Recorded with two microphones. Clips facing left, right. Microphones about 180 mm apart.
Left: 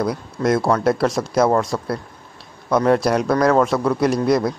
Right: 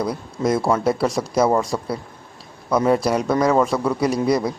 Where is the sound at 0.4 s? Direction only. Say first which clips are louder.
Left 1 dB; 5° right (ahead or behind).